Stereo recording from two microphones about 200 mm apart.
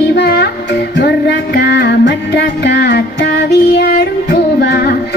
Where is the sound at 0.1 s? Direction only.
55° left (ahead or behind).